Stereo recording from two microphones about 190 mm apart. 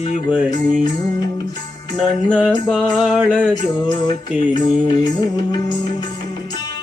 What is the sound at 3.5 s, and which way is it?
Music, 20° left (ahead or behind).